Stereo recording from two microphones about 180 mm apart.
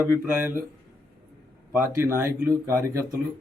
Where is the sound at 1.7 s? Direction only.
15° right (ahead or behind).